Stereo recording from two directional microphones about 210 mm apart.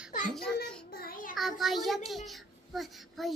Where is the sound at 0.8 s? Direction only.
45° left (ahead or behind).